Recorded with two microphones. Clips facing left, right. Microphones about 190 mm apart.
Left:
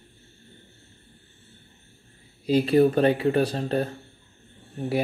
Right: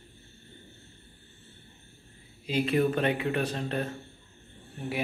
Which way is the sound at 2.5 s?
35° left (ahead or behind).